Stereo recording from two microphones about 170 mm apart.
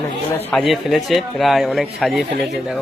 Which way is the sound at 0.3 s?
Centre (ahead or behind).